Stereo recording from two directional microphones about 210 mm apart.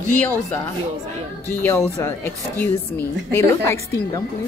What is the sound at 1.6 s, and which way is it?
A woman's voice, 15° left (ahead or behind).